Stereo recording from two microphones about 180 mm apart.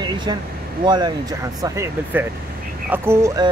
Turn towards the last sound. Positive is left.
turn(degrees=-15)  # may be behind; listen again after turning